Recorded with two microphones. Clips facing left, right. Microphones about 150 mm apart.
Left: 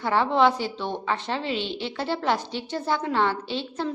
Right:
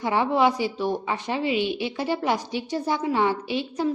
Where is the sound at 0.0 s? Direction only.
15° right (ahead or behind).